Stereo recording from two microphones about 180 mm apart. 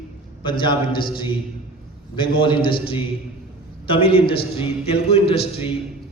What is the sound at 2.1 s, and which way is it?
Speech, 25° left (ahead or behind).